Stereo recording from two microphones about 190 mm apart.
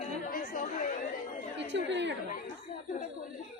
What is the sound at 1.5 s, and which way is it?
Speech, 70° right (ahead or behind).